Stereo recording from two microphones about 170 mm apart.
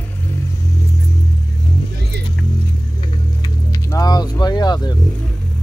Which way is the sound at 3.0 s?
20° left (ahead or behind).